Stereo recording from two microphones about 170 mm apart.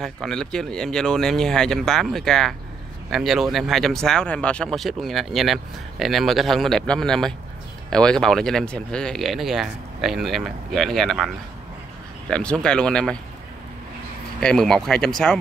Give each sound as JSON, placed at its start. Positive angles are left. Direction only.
{"t": 0.0, "sound": "speech", "side_deg": 5}
{"t": 12.3, "sound": "speech", "side_deg": 5}
{"t": 14.4, "sound": "speech", "side_deg": 5}